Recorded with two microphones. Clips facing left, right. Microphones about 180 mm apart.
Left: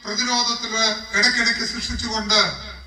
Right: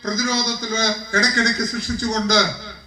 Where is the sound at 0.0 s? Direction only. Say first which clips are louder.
Right 4 dB; 60° right (ahead or behind).